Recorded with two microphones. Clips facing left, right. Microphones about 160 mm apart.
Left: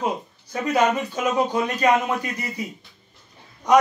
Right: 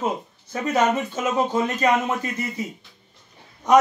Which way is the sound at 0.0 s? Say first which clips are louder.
Even; 25° right (ahead or behind).